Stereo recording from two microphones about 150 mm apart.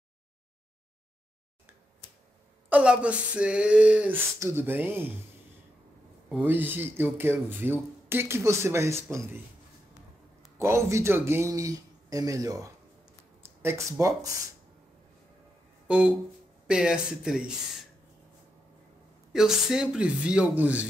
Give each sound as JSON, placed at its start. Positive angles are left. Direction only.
{"t": 2.7, "sound": "speech", "side_deg": -5}
{"t": 6.4, "sound": "speech", "side_deg": -15}
{"t": 10.6, "sound": "speech", "side_deg": -20}
{"t": 15.9, "sound": "speech", "side_deg": -5}
{"t": 19.3, "sound": "speech", "side_deg": -5}